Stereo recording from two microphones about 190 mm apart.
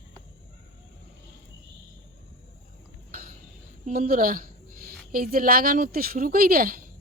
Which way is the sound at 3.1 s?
45° right (ahead or behind).